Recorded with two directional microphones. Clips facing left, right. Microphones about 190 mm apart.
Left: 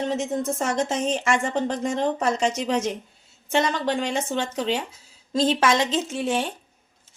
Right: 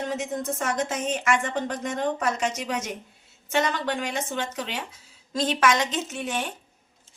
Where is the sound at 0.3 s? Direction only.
30° left (ahead or behind).